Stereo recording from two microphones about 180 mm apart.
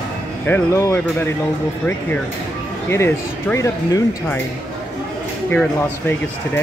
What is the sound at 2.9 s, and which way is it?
Speech, 15° left (ahead or behind).